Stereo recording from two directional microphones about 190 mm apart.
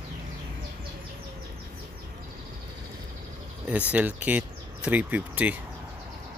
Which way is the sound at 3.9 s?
5° right (ahead or behind).